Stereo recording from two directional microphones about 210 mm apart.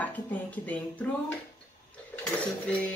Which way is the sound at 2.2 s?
5° left (ahead or behind).